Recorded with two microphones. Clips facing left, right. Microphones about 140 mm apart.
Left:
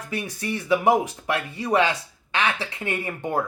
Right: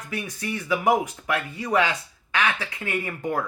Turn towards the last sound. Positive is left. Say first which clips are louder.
# left 1 dB
turn(degrees=25)  # may be behind; listen again after turning